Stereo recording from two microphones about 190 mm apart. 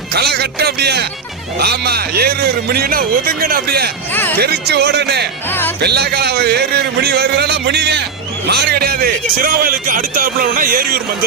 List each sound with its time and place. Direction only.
0.1 s speech: 60° right (ahead or behind)
4.1 s speech: 10° left (ahead or behind)
4.4 s speech: 55° right (ahead or behind)